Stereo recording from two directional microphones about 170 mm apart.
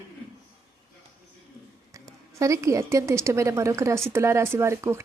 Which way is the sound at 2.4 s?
20° right (ahead or behind).